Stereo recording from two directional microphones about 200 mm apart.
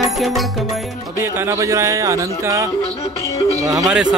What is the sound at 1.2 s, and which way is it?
Speech, 10° right (ahead or behind).